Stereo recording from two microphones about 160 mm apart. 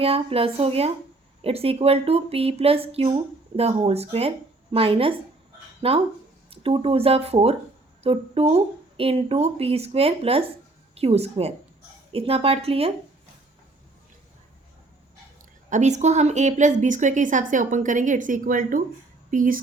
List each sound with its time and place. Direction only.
0.0 s speech: 35° right (ahead or behind)
15.7 s a woman's voice: 45° right (ahead or behind)